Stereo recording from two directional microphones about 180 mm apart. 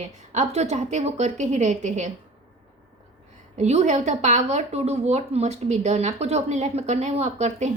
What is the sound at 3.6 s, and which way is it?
A woman's voice, 40° right (ahead or behind).